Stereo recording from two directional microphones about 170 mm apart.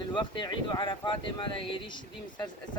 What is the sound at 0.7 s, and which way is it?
Speech, 30° left (ahead or behind).